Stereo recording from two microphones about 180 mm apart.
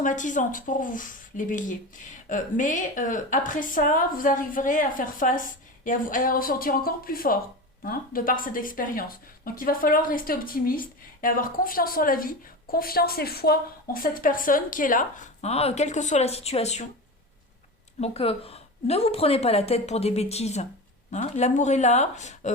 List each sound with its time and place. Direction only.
0.0 s speech: 45° left (ahead or behind)
18.0 s a woman's voice: 35° left (ahead or behind)